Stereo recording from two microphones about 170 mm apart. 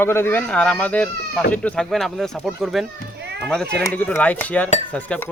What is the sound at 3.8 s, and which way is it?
Speech, 10° left (ahead or behind).